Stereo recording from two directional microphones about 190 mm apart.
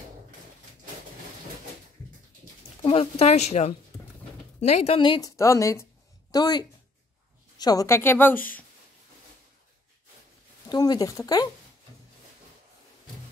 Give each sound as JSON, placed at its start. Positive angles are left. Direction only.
{"t": 2.8, "sound": "a woman's voice", "side_deg": 30}
{"t": 10.7, "sound": "a woman's voice", "side_deg": 20}